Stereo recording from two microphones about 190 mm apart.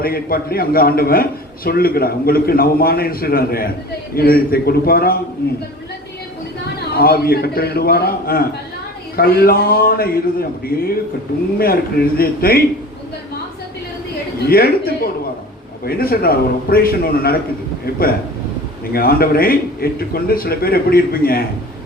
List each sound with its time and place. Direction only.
0.0 s a man's voice: 50° left (ahead or behind)
6.7 s a man's voice: 55° left (ahead or behind)
14.4 s a man's voice: 55° left (ahead or behind)
18.9 s a man's voice: 55° left (ahead or behind)